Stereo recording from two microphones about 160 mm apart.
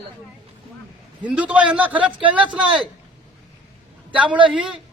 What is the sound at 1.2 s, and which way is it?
Speech, 5° right (ahead or behind).